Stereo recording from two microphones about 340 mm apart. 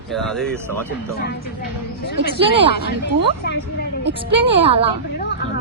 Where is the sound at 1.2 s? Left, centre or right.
Left.